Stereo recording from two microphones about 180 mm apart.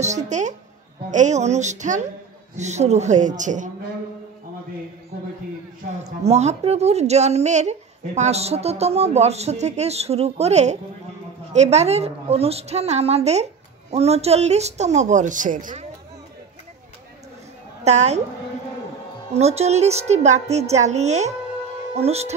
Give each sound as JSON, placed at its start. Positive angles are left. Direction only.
{"t": 0.0, "sound": "speech", "side_deg": -40}
{"t": 6.0, "sound": "speech", "side_deg": -40}
{"t": 17.8, "sound": "speech", "side_deg": -40}
{"t": 19.3, "sound": "speech", "side_deg": -35}